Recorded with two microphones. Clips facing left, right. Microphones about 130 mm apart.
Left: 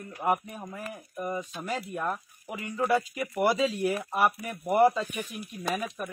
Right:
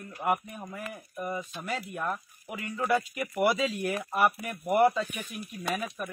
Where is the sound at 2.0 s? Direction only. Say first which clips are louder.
Left 1 dB; centre (ahead or behind).